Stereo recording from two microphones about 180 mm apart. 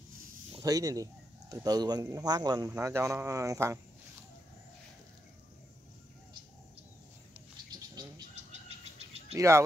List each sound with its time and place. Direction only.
0.6 s speech: 20° right (ahead or behind)
7.9 s frog: 25° right (ahead or behind)
8.4 s bird: 40° right (ahead or behind)